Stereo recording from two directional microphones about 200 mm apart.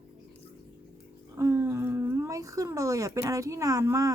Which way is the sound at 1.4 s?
15° right (ahead or behind).